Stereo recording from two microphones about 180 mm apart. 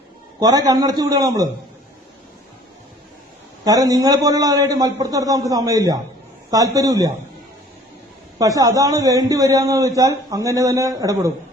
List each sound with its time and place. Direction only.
0.3 s a man's voice: 20° right (ahead or behind)
3.6 s a man's voice: 20° right (ahead or behind)
8.4 s a man's voice: 20° right (ahead or behind)